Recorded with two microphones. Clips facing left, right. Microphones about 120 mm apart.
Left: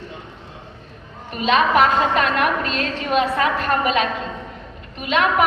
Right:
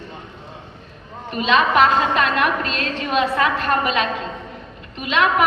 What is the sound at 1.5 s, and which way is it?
A woman's voice, 45° left (ahead or behind).